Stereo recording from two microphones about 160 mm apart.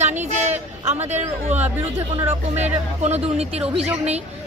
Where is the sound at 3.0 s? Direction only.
40° right (ahead or behind).